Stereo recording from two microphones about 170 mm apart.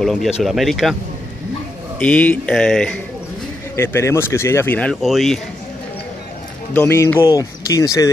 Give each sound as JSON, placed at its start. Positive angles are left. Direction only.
{"t": 0.0, "sound": "speech", "side_deg": 0}
{"t": 2.0, "sound": "speech", "side_deg": 10}
{"t": 3.7, "sound": "speech", "side_deg": 15}
{"t": 5.0, "sound": "speech", "side_deg": 0}
{"t": 6.7, "sound": "speech", "side_deg": 10}